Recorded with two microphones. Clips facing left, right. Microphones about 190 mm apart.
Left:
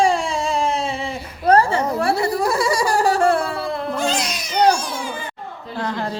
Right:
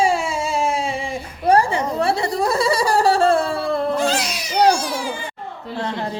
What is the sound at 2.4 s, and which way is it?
Laughter, 30° right (ahead or behind).